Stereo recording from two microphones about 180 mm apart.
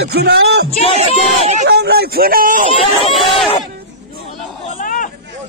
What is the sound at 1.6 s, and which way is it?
A man's voice, 65° right (ahead or behind).